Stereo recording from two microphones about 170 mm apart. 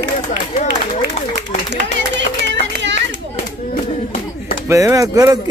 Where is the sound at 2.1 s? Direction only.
90° right.